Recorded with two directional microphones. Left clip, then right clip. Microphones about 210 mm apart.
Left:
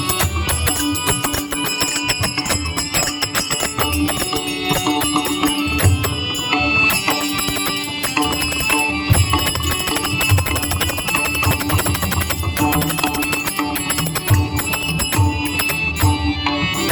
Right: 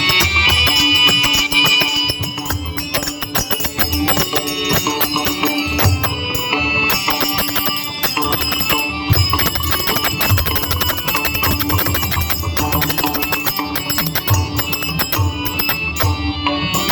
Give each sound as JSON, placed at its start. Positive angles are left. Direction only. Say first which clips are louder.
{"t": 0.0, "sound": "music", "louder": "right 9 dB", "side_deg": 45}
{"t": 4.9, "sound": "music", "louder": "even", "side_deg": 45}
{"t": 6.5, "sound": "music", "louder": "left 1 dB", "side_deg": 45}